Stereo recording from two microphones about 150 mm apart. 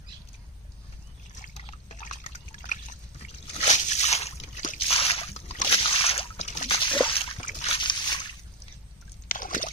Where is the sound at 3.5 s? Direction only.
45° left (ahead or behind).